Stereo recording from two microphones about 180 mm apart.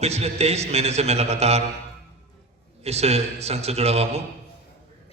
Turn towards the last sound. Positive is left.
turn(degrees=-35)  # may be behind; listen again after turning